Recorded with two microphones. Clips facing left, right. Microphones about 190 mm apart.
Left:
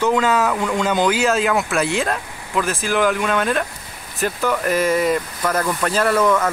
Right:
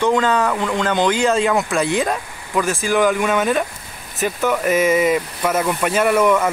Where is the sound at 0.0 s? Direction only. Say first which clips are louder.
Right 1 dB; 5° left (ahead or behind).